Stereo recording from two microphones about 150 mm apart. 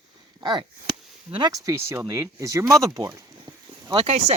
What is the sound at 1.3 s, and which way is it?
Speech, 30° right (ahead or behind).